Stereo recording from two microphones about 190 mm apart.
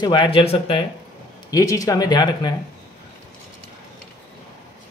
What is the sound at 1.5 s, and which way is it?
Speech, 15° left (ahead or behind).